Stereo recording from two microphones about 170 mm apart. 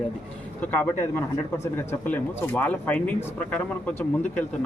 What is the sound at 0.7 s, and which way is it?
Speech, 10° left (ahead or behind).